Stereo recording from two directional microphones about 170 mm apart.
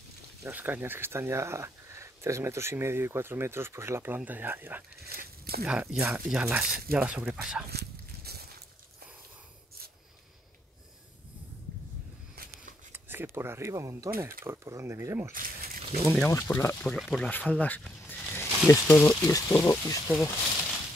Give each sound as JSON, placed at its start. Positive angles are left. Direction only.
{"t": 0.4, "sound": "speech", "side_deg": -10}
{"t": 5.1, "sound": "speech", "side_deg": -65}
{"t": 5.7, "sound": "speech", "side_deg": -5}
{"t": 7.7, "sound": "walk", "side_deg": -70}
{"t": 12.9, "sound": "speech", "side_deg": -15}
{"t": 15.3, "sound": "a sound", "side_deg": -55}
{"t": 16.3, "sound": "speech", "side_deg": 15}
{"t": 20.1, "sound": "speech", "side_deg": 10}